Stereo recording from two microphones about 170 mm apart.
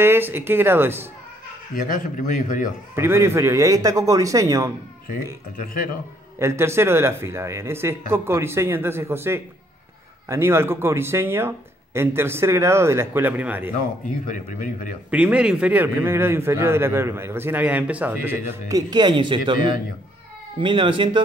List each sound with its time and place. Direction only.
0.0 s a man's voice: 15° right (ahead or behind)
1.8 s speech: 50° left (ahead or behind)
3.0 s a man's voice: 15° right (ahead or behind)
6.4 s a man's voice: 15° right (ahead or behind)
14.2 s speech: 50° left (ahead or behind)
15.0 s a man's voice: 5° right (ahead or behind); by 19.6 s 30° right (ahead or behind)
20.6 s a man's voice: 30° right (ahead or behind)